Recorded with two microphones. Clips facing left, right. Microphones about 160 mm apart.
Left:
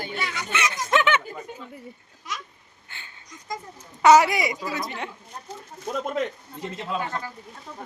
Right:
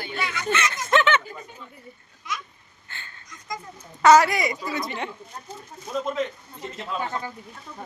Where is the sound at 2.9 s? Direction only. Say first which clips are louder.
Right 2 dB; 15° left (ahead or behind).